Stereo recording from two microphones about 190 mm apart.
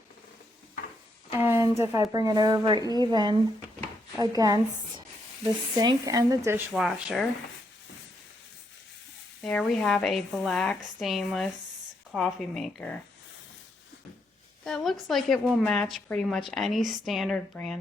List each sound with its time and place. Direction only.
1.3 s a woman's voice: 10° right (ahead or behind)
6.7 s a woman's voice: centre (ahead or behind)
9.4 s a woman's voice: 5° left (ahead or behind)
14.6 s a woman's voice: centre (ahead or behind)